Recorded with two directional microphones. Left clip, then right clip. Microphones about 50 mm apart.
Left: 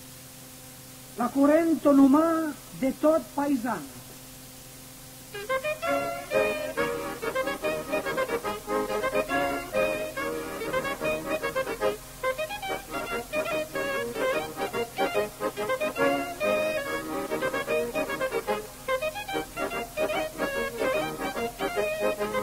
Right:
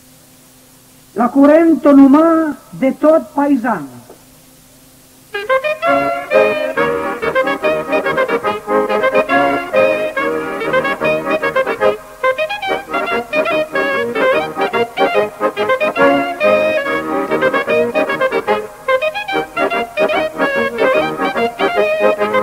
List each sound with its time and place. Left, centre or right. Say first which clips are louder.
1.2 s a man's voice: right 13 dB; right
1.8 s a man's voice: right 12 dB; centre
5.4 s music: right 14 dB; right
8.8 s music: right 15 dB; right
16.3 s music: right 14 dB; right
19.7 s music: right 12 dB; right